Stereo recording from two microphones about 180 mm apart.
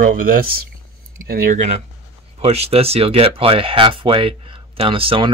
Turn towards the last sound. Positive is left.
turn(degrees=-30)  # may be behind; listen again after turning